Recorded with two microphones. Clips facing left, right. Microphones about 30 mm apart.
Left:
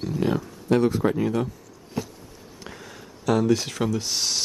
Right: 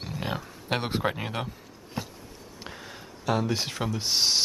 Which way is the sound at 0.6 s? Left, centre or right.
Right.